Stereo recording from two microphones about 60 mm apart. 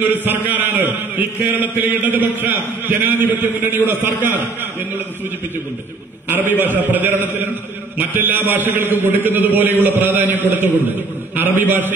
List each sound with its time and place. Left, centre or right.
0.0 s a man's voice: right
6.2 s a man's voice: right